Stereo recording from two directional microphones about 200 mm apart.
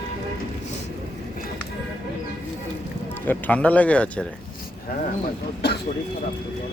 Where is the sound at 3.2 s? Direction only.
10° left (ahead or behind).